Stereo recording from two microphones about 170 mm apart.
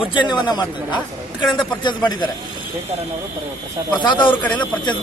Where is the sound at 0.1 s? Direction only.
25° left (ahead or behind).